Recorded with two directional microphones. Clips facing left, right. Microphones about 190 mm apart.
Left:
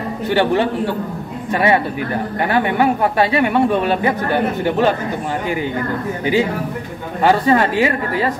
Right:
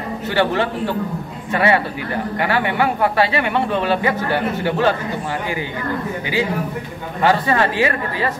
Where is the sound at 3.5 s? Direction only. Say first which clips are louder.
Left 3 dB; 10° left (ahead or behind).